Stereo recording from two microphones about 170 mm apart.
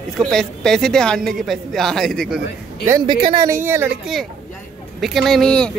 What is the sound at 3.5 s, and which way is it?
Speech, 15° right (ahead or behind).